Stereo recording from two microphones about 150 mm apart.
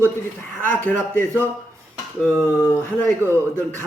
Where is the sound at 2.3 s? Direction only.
15° right (ahead or behind).